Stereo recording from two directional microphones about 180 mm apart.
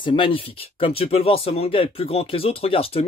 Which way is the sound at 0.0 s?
30° left (ahead or behind).